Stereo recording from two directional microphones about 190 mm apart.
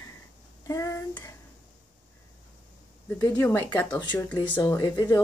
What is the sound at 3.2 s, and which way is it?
Speech, 15° left (ahead or behind).